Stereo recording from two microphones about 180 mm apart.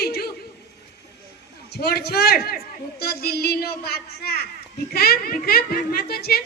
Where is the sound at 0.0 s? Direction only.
60° left (ahead or behind).